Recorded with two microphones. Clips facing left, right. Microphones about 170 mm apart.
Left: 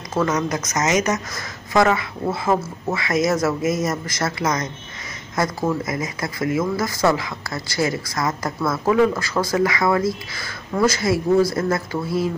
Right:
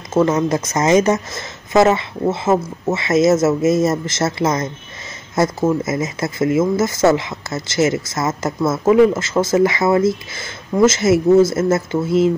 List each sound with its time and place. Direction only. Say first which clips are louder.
0.1 s speech: right 6 dB; 25° right (ahead or behind)